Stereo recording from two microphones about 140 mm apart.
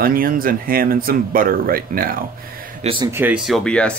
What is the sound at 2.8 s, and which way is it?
Speech, 40° right (ahead or behind).